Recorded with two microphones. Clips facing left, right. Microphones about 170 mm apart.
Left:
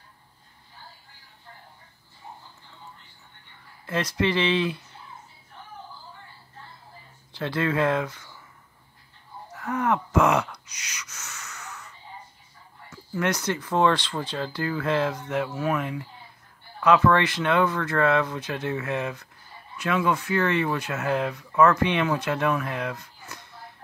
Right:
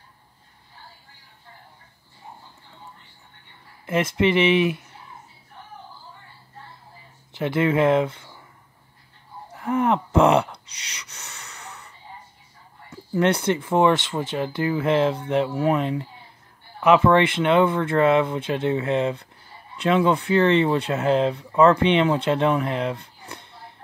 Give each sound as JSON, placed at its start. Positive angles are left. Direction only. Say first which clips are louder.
{"t": 3.8, "sound": "speech", "louder": "right 5 dB", "side_deg": -25}
{"t": 7.3, "sound": "speech", "louder": "right 5 dB", "side_deg": -20}
{"t": 9.5, "sound": "gasp", "louder": "right 4 dB", "side_deg": -25}
{"t": 12.9, "sound": "speech", "louder": "right 6 dB", "side_deg": -30}